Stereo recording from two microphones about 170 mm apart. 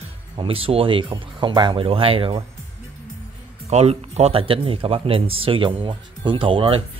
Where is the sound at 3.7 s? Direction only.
40° right (ahead or behind).